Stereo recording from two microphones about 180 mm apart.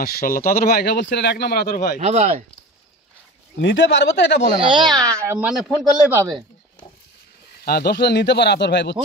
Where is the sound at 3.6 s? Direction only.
85° left.